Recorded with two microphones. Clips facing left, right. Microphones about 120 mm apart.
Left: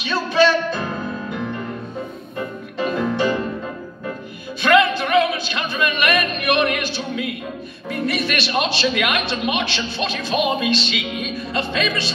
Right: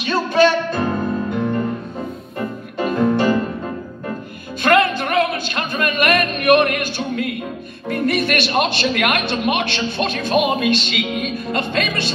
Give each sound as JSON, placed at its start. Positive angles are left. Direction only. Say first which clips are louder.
{"t": 0.0, "sound": "music", "louder": "right 2 dB", "side_deg": -50}
{"t": 2.3, "sound": "music", "louder": "right 1 dB", "side_deg": -50}
{"t": 4.6, "sound": "a sound", "louder": "even", "side_deg": -50}
{"t": 7.9, "sound": "a man's voice", "louder": "right 4 dB", "side_deg": -55}